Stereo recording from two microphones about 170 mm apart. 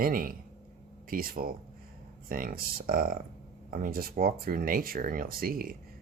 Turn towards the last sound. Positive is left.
turn(degrees=-60)  # may be behind; listen again after turning